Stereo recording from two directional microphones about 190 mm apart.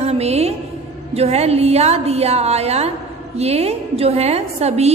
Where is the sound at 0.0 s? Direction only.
35° right (ahead or behind).